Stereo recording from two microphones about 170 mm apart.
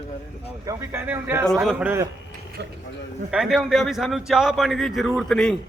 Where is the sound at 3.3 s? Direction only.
Centre (ahead or behind).